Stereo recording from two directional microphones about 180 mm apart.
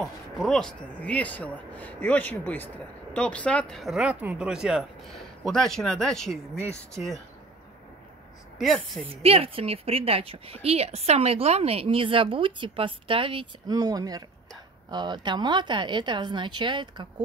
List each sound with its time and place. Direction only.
0.0 s speech: centre (ahead or behind)
8.5 s speech: centre (ahead or behind)
9.0 s a woman's voice: 30° right (ahead or behind)